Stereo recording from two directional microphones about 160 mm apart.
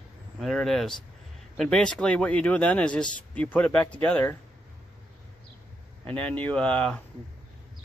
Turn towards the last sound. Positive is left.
turn(degrees=5)  # may be behind; listen again after turning